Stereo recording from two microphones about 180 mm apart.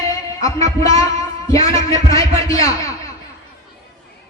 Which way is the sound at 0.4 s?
20° left (ahead or behind).